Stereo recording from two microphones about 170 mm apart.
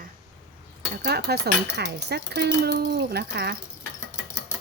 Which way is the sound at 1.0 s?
75° right (ahead or behind).